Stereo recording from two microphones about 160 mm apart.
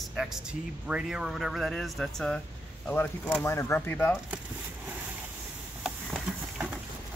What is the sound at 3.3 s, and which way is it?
Speech, 15° left (ahead or behind).